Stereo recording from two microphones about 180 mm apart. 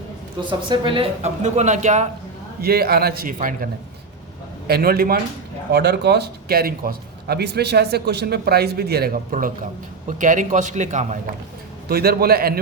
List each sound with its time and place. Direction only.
0.3 s speech: 25° right (ahead or behind); by 2.0 s 40° right (ahead or behind)
2.6 s a man's voice: 60° right (ahead or behind); by 11.2 s 40° right (ahead or behind)
11.9 s speech: 60° right (ahead or behind)